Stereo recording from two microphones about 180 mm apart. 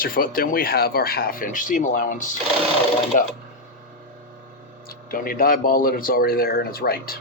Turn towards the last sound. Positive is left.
turn(degrees=55)  # may be behind; listen again after turning